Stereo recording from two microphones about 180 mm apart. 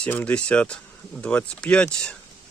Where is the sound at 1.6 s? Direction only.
5° left (ahead or behind).